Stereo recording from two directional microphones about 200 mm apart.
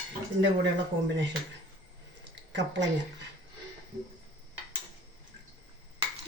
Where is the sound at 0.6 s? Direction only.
60° right (ahead or behind).